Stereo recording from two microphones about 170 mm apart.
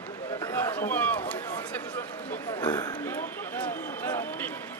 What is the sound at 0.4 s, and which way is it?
Run, 15° left (ahead or behind).